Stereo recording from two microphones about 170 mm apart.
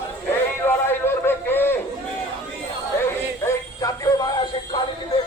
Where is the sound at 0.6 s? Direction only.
15° left (ahead or behind).